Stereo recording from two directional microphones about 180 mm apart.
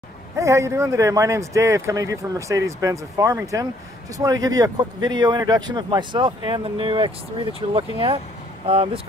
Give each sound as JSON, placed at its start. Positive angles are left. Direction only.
{"t": 0.4, "sound": "speech", "side_deg": -15}